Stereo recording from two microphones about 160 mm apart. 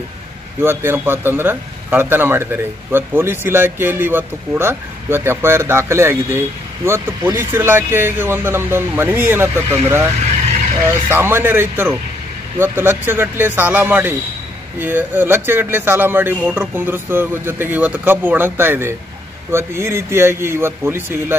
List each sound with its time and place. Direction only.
0.6 s a man's voice: 15° right (ahead or behind)
10.9 s a man's voice: 15° right (ahead or behind)